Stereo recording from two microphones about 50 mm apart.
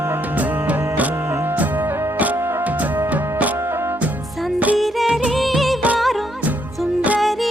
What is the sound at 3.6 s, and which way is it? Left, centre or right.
Music, right.